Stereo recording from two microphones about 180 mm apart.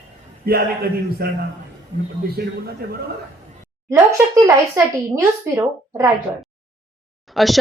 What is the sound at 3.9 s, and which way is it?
Speech, 15° right (ahead or behind).